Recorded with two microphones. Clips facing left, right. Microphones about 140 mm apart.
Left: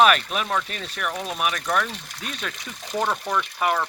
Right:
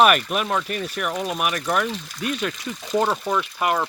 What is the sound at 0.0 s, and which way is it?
Speech, 10° right (ahead or behind).